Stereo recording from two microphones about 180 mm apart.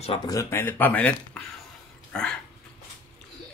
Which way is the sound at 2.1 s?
5° left (ahead or behind).